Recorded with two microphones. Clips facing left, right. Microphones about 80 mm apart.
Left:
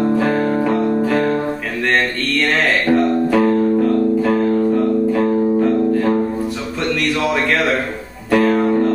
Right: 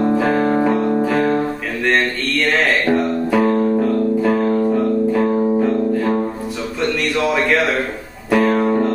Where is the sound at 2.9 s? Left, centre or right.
Centre.